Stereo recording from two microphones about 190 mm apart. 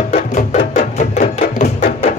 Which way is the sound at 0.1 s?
35° left (ahead or behind).